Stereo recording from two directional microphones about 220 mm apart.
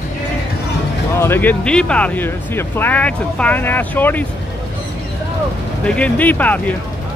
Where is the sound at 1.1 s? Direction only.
10° left (ahead or behind).